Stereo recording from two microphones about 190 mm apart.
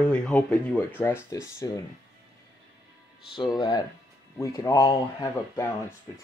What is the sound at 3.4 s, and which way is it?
Speech, 25° left (ahead or behind).